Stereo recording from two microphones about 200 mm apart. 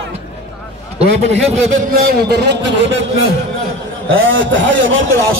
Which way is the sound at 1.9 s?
50° right (ahead or behind).